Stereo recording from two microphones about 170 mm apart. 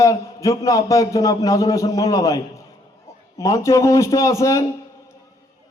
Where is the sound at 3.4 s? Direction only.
15° left (ahead or behind).